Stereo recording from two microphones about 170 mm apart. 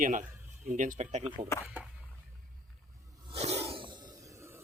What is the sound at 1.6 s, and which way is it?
Speech, 10° right (ahead or behind).